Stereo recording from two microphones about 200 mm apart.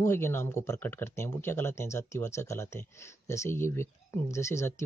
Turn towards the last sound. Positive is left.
turn(degrees=15)  # may be behind; listen again after turning